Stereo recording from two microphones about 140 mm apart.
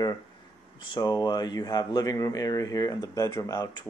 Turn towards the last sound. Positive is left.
turn(degrees=25)  # may be behind; listen again after turning